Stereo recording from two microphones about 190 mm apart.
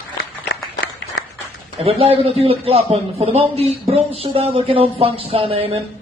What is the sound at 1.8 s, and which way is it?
A man's voice, 30° right (ahead or behind).